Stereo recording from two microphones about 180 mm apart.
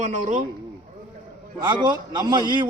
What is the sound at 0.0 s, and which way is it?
Speech, 40° right (ahead or behind).